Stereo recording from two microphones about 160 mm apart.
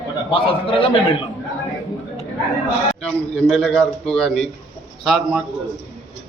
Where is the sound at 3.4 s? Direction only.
Centre (ahead or behind).